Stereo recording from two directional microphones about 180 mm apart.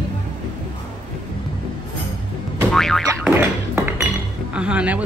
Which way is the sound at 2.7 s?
Centre (ahead or behind).